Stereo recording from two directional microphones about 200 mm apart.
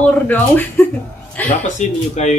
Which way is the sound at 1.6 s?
35° left (ahead or behind).